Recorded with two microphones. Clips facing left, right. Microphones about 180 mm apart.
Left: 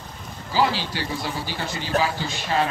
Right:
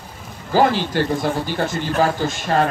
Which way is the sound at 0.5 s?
50° right (ahead or behind).